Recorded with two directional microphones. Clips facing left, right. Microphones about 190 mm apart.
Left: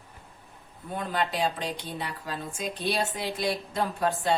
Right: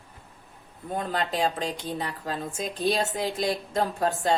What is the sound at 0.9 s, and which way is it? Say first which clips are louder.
A woman's voice: right 1 dB; 40° right (ahead or behind).